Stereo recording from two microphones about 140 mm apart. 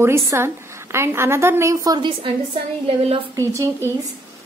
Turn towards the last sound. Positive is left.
turn(degrees=-20)  # may be behind; listen again after turning